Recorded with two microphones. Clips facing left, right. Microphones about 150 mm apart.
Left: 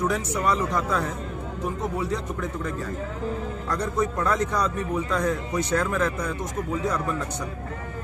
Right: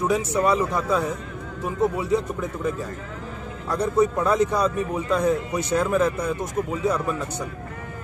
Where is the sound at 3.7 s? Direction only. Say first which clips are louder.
Right 6 dB; 10° right (ahead or behind).